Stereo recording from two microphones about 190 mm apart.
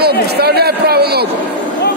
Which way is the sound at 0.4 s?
55° right (ahead or behind).